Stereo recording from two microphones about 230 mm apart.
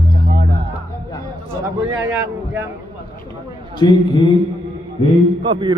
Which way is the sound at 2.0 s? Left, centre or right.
Centre.